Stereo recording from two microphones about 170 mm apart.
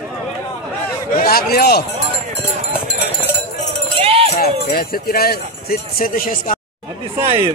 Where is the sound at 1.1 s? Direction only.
60° left (ahead or behind).